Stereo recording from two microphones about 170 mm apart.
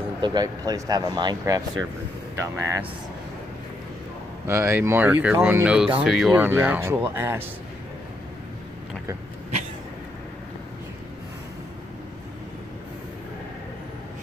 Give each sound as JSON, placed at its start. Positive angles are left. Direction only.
{"t": 0.2, "sound": "speech", "side_deg": -25}
{"t": 4.5, "sound": "speech", "side_deg": -15}